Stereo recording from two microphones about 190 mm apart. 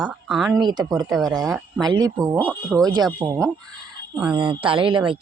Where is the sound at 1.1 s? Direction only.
Centre (ahead or behind).